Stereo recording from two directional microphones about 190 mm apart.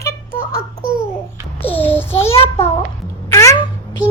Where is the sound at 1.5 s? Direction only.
10° left (ahead or behind).